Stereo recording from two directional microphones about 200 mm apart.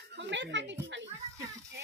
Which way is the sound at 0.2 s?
60° right (ahead or behind).